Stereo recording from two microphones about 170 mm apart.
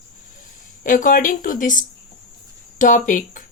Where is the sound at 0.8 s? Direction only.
50° left (ahead or behind).